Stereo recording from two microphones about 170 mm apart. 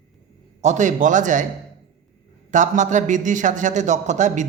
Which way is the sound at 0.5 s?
45° right (ahead or behind).